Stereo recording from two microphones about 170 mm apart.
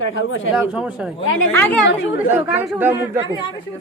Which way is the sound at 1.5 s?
10° left (ahead or behind).